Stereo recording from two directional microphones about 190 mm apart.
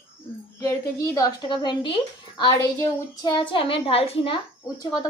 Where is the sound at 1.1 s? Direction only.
20° left (ahead or behind).